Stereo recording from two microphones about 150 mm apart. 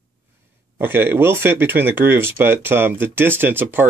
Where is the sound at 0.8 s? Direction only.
15° right (ahead or behind).